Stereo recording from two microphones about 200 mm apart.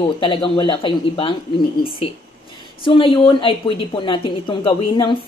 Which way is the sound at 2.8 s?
25° left (ahead or behind).